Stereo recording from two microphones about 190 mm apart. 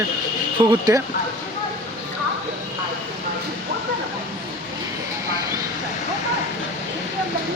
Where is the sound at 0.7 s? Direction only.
20° right (ahead or behind).